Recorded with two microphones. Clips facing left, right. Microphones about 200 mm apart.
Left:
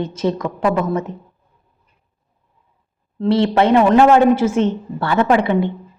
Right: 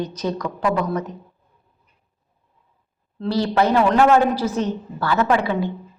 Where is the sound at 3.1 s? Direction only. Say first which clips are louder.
Left 5 dB; 25° left (ahead or behind).